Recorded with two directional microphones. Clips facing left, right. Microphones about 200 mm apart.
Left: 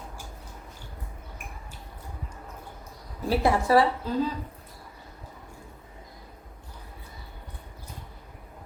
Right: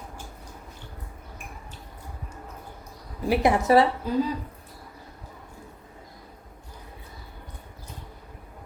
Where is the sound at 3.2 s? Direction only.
15° right (ahead or behind).